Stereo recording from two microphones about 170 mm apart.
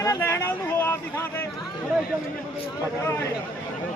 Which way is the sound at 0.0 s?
15° left (ahead or behind).